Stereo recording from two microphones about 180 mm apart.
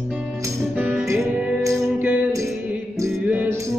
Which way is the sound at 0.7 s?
10° right (ahead or behind).